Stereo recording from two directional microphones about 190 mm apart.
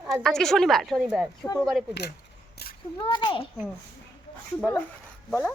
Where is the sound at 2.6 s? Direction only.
55° left (ahead or behind).